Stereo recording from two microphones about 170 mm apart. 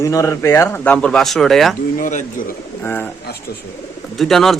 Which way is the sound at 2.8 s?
10° left (ahead or behind).